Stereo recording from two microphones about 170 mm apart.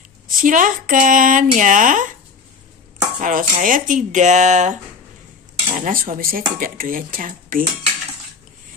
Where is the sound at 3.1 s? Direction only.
50° right (ahead or behind).